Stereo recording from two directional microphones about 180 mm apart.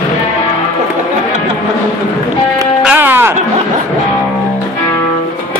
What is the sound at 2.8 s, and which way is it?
Sheep, 10° right (ahead or behind).